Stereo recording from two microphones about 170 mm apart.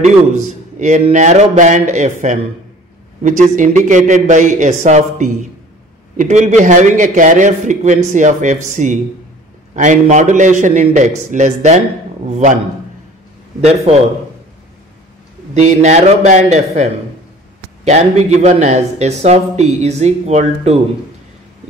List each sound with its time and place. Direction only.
0.0 s a man's voice: 45° right (ahead or behind)
13.9 s speech: 35° right (ahead or behind)
15.5 s a man's voice: 45° right (ahead or behind)